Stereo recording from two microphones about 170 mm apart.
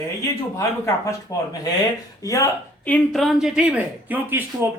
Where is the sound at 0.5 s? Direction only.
15° left (ahead or behind).